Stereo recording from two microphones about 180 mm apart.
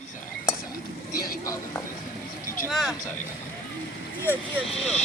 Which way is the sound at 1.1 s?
55° left (ahead or behind).